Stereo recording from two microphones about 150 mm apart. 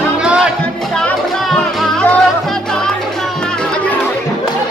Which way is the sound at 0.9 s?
5° left (ahead or behind).